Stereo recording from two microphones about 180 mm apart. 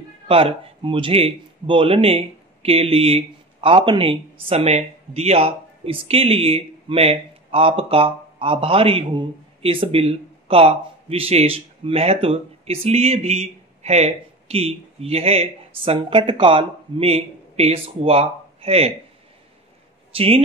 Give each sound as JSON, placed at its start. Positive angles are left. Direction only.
{"t": 0.3, "sound": "speech", "side_deg": -30}
{"t": 20.2, "sound": "speech", "side_deg": -30}